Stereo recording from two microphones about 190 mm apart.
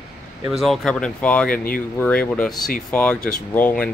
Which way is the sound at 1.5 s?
50° left (ahead or behind).